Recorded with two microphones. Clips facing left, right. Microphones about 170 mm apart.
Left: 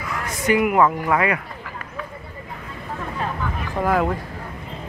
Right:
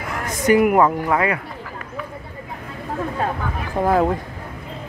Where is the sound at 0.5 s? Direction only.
40° right (ahead or behind).